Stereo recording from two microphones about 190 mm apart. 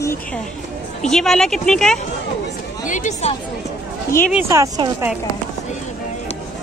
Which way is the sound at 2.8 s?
40° left (ahead or behind).